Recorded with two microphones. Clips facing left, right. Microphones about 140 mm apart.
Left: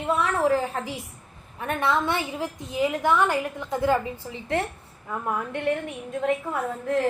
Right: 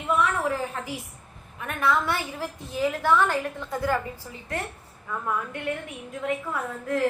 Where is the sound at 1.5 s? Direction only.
30° left (ahead or behind).